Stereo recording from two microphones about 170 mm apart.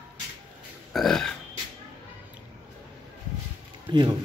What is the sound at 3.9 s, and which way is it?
Speech, 25° right (ahead or behind).